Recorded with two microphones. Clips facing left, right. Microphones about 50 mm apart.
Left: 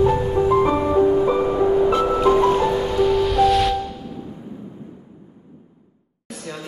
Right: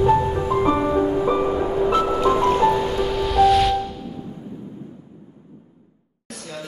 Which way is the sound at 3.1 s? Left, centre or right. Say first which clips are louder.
Right 1 dB; centre.